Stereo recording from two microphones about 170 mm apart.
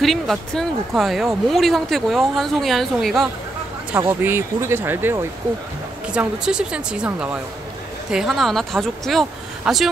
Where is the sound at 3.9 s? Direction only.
15° right (ahead or behind).